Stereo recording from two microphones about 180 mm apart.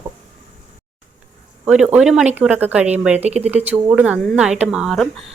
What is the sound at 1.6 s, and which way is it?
Speech, 5° right (ahead or behind).